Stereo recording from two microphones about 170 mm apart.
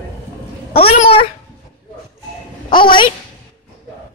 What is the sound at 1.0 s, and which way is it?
Speech, 35° left (ahead or behind).